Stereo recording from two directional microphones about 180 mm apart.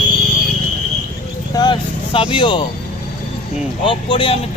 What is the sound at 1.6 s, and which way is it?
Vehicle, 25° left (ahead or behind).